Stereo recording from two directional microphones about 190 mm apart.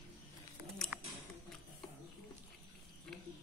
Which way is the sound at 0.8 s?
5° left (ahead or behind).